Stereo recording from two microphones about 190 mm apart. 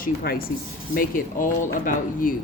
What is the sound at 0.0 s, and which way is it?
Speech, 50° left (ahead or behind).